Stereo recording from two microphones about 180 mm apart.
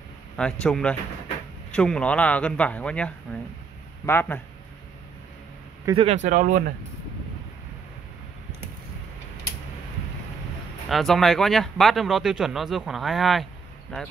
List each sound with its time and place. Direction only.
0.4 s speech: 5° left (ahead or behind)
5.9 s speech: 40° right (ahead or behind)
10.9 s speech: centre (ahead or behind)